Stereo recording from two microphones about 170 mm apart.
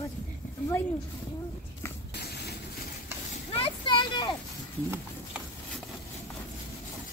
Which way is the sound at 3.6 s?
30° left (ahead or behind).